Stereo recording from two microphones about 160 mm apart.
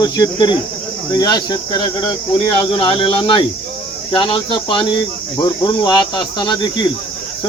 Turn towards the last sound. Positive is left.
turn(degrees=30)  # may be behind; listen again after turning